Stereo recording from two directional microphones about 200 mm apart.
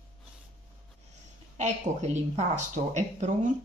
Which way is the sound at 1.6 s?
35° right (ahead or behind).